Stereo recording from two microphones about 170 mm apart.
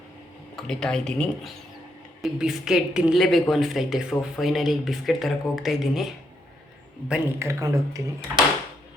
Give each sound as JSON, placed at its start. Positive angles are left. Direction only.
{"t": 0.5, "sound": "speech", "side_deg": 5}
{"t": 7.1, "sound": "a man's voice", "side_deg": -15}